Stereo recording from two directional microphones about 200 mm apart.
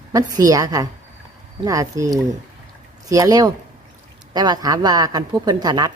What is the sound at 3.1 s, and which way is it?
A woman's voice, 15° right (ahead or behind).